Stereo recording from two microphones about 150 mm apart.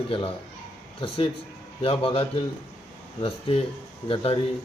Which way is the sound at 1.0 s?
40° left (ahead or behind).